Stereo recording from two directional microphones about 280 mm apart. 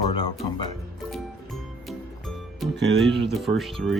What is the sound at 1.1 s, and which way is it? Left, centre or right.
Music, centre.